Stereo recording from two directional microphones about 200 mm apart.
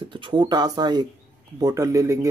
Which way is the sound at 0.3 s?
20° right (ahead or behind).